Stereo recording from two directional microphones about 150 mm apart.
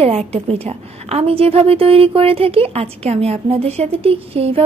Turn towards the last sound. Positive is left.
turn(degrees=-40)  # may be behind; listen again after turning